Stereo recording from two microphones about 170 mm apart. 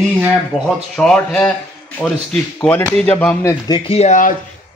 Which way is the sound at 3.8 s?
35° left (ahead or behind).